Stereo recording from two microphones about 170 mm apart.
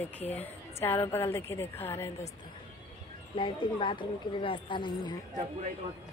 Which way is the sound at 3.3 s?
30° left (ahead or behind).